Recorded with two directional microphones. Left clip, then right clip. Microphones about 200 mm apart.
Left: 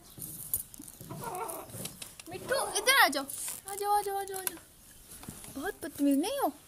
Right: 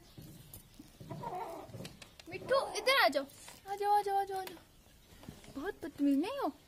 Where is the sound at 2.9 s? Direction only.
Centre (ahead or behind).